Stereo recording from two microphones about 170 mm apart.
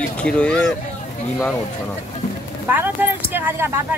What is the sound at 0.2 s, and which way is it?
Speech, 5° left (ahead or behind).